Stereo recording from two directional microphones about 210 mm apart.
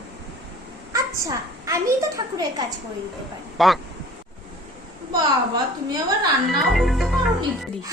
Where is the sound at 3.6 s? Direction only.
Centre (ahead or behind).